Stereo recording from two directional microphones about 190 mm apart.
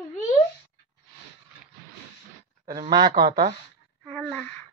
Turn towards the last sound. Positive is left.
turn(degrees=-25)  # may be behind; listen again after turning